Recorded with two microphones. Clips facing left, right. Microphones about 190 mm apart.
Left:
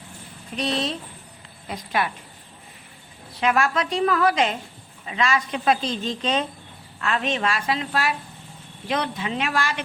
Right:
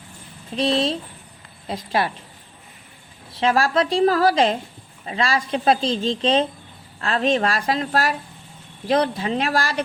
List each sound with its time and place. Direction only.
0.5 s a woman's voice: 30° right (ahead or behind)
3.4 s a woman's voice: 30° right (ahead or behind)